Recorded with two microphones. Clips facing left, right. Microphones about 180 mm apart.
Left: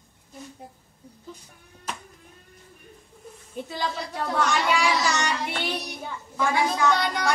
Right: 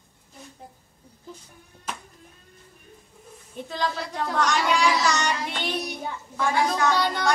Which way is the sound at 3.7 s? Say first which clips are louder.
Right 3 dB; 5° left (ahead or behind).